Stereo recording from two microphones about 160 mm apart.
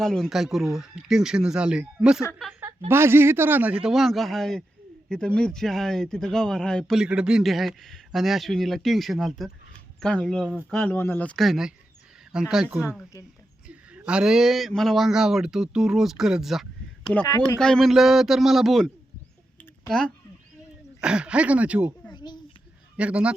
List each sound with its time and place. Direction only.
0.0 s a man's voice: centre (ahead or behind)
13.7 s speech: 5° right (ahead or behind)
19.9 s a man's voice: 5° left (ahead or behind)
22.1 s a sound: 25° left (ahead or behind)
23.0 s a man's voice: 5° right (ahead or behind)